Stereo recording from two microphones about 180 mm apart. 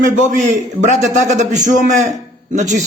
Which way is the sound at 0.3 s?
45° right (ahead or behind).